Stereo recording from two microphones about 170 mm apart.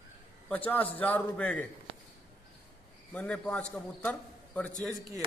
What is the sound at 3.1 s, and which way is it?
A man's voice, 5° left (ahead or behind).